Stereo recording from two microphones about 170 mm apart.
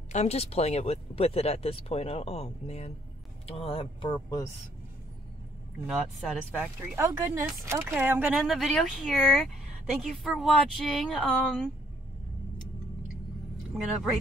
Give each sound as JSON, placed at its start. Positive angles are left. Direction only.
{"t": 0.1, "sound": "speech", "side_deg": 40}
{"t": 5.9, "sound": "speech", "side_deg": -5}
{"t": 7.0, "sound": "speech", "side_deg": -20}